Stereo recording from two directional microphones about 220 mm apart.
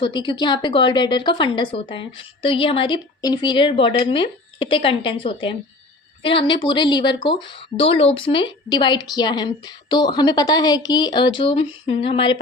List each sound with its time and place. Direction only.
0.0 s speech: 20° left (ahead or behind)